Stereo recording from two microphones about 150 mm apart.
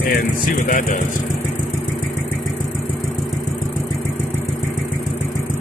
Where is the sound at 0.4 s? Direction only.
65° left (ahead or behind).